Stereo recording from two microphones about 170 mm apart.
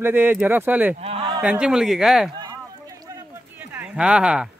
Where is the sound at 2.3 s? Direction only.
20° right (ahead or behind).